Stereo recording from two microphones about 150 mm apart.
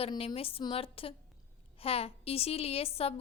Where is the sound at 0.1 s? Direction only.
35° left (ahead or behind).